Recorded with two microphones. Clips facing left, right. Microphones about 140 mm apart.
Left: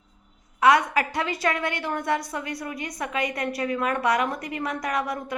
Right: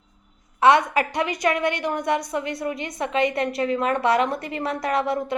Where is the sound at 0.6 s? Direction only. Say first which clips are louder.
Right 2 dB; 25° right (ahead or behind).